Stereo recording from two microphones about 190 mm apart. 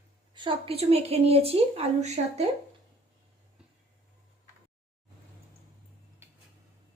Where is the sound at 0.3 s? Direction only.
25° right (ahead or behind).